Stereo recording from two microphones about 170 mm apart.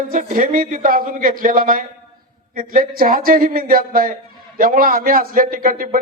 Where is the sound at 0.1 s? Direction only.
50° right (ahead or behind).